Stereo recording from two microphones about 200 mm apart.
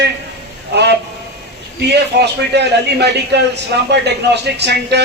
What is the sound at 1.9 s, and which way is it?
A man's voice, 55° right (ahead or behind).